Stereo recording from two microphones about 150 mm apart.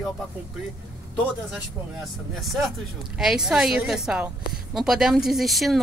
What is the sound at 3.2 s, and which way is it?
A woman's voice, 5° right (ahead or behind).